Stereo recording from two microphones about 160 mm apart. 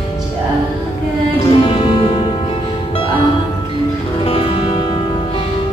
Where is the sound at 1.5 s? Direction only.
35° left (ahead or behind).